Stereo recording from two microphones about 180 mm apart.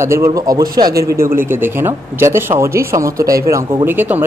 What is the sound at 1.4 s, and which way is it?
A man's voice, 10° right (ahead or behind).